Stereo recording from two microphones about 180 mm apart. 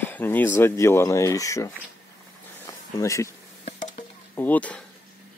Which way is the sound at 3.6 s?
40° left (ahead or behind).